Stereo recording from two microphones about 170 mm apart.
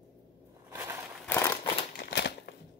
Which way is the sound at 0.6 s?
15° right (ahead or behind).